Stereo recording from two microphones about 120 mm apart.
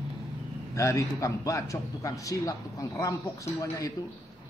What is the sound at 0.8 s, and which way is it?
A man's voice, 25° left (ahead or behind).